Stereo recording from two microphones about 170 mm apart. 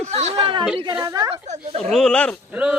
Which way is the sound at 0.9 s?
20° right (ahead or behind).